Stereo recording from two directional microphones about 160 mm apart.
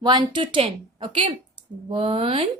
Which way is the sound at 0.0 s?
25° right (ahead or behind).